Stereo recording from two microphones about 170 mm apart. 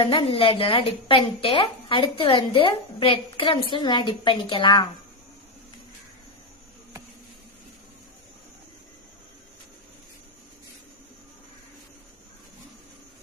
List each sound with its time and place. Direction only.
0.0 s a woman's voice: 30° left (ahead or behind)